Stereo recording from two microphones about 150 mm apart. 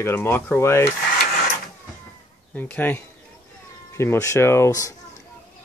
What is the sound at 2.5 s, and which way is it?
Speech, 10° left (ahead or behind).